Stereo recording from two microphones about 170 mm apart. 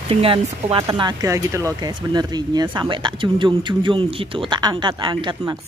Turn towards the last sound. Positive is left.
turn(degrees=-25)  # may be behind; listen again after turning